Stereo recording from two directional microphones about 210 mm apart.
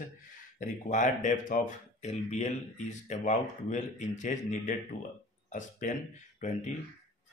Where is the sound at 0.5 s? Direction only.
35° left (ahead or behind).